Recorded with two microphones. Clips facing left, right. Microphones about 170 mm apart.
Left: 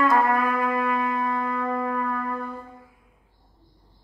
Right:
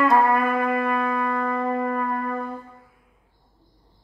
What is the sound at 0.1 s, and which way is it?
Music, 50° right (ahead or behind).